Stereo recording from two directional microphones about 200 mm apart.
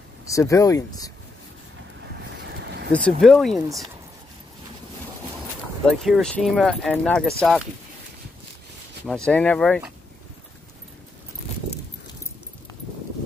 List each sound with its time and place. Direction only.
0.3 s speech: 15° left (ahead or behind)
2.6 s a sound: 55° right (ahead or behind)
2.9 s speech: centre (ahead or behind)
5.9 s speech: centre (ahead or behind)
9.0 s speech: 5° left (ahead or behind)